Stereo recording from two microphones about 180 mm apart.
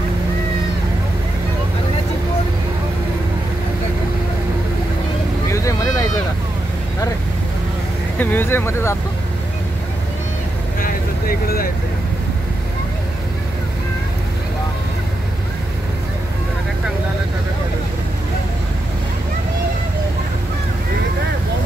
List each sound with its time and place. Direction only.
5.5 s vehicle: 15° left (ahead or behind)
8.2 s speech: 10° left (ahead or behind)
10.8 s vehicle: 55° left (ahead or behind)